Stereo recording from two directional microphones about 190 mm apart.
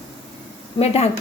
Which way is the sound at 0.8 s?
30° left (ahead or behind).